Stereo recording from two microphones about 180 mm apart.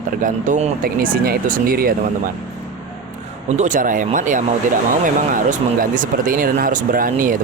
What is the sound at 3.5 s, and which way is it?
Speech, 45° right (ahead or behind).